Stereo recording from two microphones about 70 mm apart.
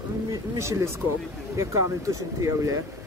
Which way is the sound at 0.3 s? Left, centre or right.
Right.